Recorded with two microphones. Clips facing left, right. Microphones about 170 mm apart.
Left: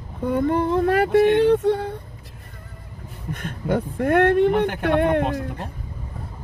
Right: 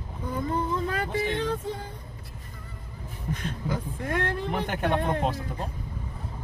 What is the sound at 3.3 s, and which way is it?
Speech, 55° left (ahead or behind).